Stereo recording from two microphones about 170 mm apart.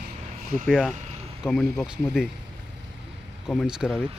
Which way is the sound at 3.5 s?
Centre (ahead or behind).